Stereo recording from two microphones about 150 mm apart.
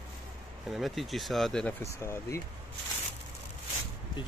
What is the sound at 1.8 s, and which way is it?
Speech, 15° left (ahead or behind).